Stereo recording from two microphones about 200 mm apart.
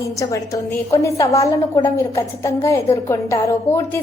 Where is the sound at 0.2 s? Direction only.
15° left (ahead or behind).